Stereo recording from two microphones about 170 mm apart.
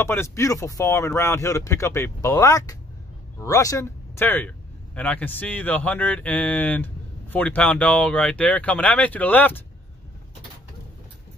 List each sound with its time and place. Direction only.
0.0 s speech: 15° left (ahead or behind)